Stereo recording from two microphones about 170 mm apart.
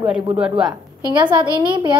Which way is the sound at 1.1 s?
25° right (ahead or behind).